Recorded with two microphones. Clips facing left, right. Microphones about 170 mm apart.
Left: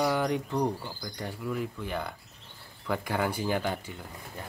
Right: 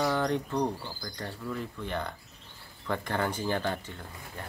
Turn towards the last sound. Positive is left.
turn(degrees=10)  # may be behind; listen again after turning